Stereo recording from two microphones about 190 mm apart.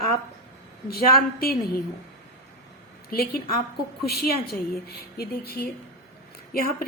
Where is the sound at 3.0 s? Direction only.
50° left (ahead or behind).